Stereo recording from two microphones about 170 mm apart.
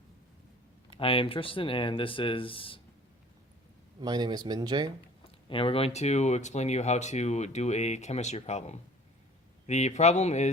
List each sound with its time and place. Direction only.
0.9 s speech: 30° left (ahead or behind)
4.0 s speech: 25° right (ahead or behind)
5.5 s speech: 30° left (ahead or behind)